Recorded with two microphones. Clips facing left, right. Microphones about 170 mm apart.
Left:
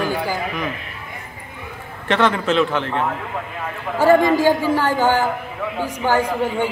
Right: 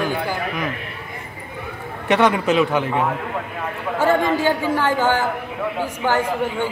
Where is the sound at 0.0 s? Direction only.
10° left (ahead or behind).